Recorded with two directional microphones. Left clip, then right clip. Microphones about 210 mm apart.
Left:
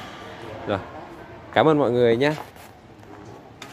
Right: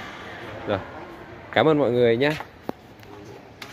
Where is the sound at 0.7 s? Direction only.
5° left (ahead or behind).